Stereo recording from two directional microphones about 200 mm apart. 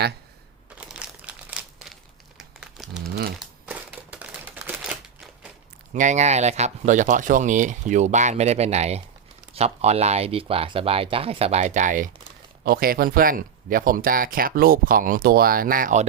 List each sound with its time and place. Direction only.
0.8 s crumpling: 5° right (ahead or behind)
3.7 s a sound: 5° right (ahead or behind)
5.9 s speech: 35° right (ahead or behind)